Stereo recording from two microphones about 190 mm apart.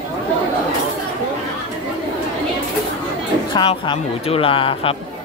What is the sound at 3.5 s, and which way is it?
Speech, 25° left (ahead or behind).